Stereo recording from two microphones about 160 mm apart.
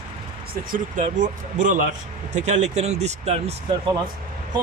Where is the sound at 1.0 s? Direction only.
50° right (ahead or behind).